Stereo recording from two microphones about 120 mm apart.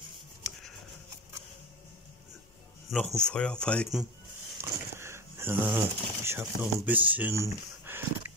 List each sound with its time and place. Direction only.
2.9 s speech: 5° left (ahead or behind)
4.6 s speech: 20° right (ahead or behind)
7.3 s a sound: 20° right (ahead or behind)